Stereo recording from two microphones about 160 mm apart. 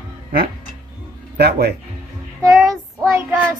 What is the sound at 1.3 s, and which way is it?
Speech, 90° right.